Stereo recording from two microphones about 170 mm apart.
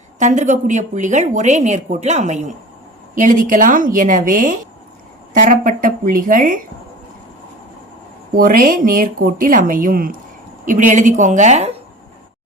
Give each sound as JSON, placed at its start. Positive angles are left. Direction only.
{"t": 0.2, "sound": "a woman's voice", "side_deg": -45}
{"t": 8.4, "sound": "a woman's voice", "side_deg": -55}